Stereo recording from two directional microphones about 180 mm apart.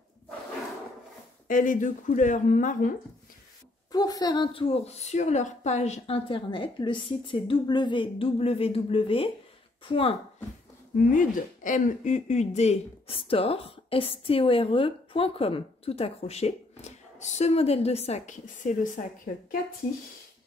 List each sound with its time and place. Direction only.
1.5 s speech: 45° left (ahead or behind)
3.9 s a woman's voice: 20° left (ahead or behind)
11.0 s speech: 45° left (ahead or behind)